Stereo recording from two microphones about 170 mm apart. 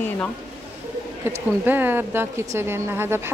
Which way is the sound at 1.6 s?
10° right (ahead or behind).